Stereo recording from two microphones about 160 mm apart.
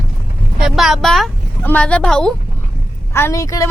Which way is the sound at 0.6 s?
Centre (ahead or behind).